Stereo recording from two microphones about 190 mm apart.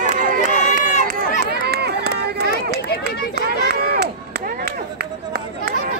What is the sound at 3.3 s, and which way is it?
Run, 55° right (ahead or behind).